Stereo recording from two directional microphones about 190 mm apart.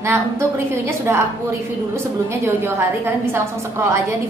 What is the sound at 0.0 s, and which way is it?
A woman's voice, 15° right (ahead or behind).